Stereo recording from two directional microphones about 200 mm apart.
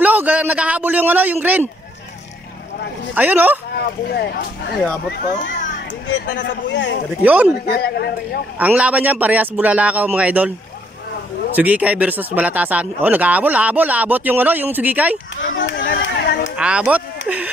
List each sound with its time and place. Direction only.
0.0 s a man's voice: 10° right (ahead or behind)
3.2 s speech: 10° right (ahead or behind)
3.7 s a man's voice: 50° left (ahead or behind)
4.8 s speech: 10° left (ahead or behind)
6.4 s speech: 65° left (ahead or behind)
7.2 s speech: 5° right (ahead or behind)
7.6 s a man's voice: 50° left (ahead or behind)
8.5 s speech: 5° right (ahead or behind)
11.5 s speech: 5° right (ahead or behind)
15.4 s chatter: 70° left (ahead or behind); by 16.5 s 50° left (ahead or behind)
16.5 s speech: 5° right (ahead or behind)